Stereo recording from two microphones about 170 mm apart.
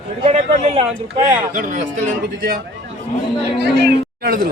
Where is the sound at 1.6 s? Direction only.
50° right (ahead or behind).